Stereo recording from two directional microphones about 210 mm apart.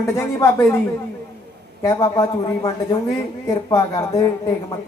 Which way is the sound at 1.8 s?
15° left (ahead or behind).